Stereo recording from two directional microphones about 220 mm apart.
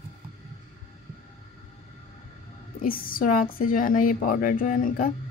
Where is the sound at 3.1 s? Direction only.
40° left (ahead or behind).